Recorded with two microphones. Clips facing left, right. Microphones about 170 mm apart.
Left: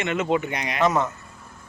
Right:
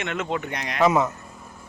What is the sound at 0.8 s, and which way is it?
Speech, 5° right (ahead or behind).